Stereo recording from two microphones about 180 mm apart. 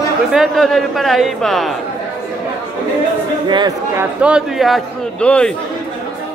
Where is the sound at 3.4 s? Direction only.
25° right (ahead or behind).